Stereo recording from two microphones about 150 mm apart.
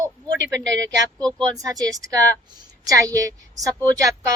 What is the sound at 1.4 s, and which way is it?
Speech, 25° right (ahead or behind).